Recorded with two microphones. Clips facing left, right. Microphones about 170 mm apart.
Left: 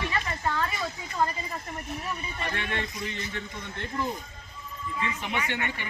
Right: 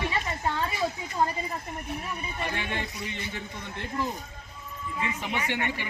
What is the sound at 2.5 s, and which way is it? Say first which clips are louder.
Speech: even; 15° right (ahead or behind).